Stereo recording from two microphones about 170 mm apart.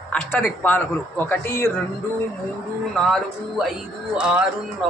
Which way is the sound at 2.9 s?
Centre (ahead or behind).